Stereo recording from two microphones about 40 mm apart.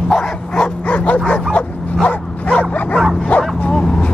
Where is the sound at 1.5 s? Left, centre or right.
Left.